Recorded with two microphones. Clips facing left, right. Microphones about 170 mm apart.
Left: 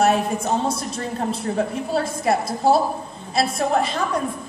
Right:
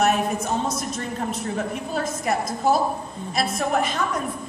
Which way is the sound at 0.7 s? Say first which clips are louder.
Left 2 dB; 30° left (ahead or behind).